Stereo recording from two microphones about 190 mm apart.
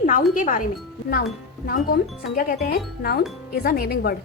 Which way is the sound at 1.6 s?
50° left (ahead or behind).